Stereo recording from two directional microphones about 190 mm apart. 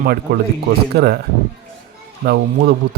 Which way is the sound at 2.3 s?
55° right (ahead or behind).